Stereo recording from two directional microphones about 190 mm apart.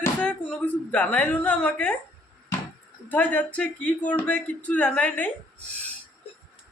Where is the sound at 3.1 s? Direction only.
10° left (ahead or behind).